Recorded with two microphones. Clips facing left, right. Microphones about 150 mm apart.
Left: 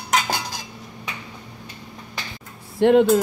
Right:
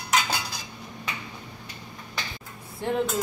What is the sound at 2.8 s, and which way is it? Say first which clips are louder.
Speech: left 12 dB; 75° left (ahead or behind).